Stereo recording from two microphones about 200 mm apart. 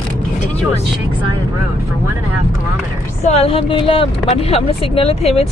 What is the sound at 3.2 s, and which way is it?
Speech, 30° left (ahead or behind).